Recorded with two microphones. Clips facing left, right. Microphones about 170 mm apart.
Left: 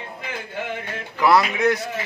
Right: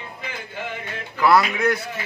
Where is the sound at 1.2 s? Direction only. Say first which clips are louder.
Even; 15° left (ahead or behind).